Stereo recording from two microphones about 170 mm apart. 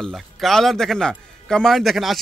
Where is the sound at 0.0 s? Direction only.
Centre (ahead or behind).